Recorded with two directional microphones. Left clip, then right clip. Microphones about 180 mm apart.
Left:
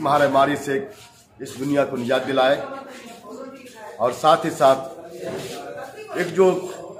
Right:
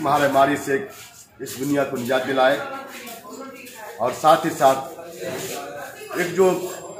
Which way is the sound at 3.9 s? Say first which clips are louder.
Even; 10° left (ahead or behind).